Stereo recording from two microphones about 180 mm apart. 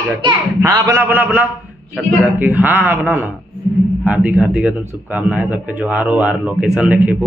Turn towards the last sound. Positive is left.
turn(degrees=-5)  # may be behind; listen again after turning